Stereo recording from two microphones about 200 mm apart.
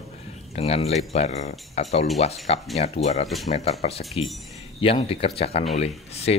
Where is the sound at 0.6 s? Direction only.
30° left (ahead or behind).